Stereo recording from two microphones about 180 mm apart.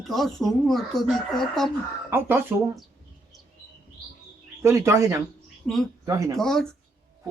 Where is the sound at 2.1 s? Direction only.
10° right (ahead or behind).